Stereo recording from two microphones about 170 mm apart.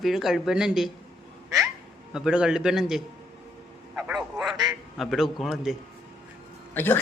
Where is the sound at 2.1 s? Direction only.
5° right (ahead or behind).